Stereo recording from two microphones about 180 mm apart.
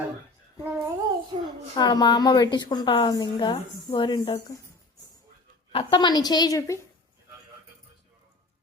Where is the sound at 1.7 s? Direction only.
25° left (ahead or behind).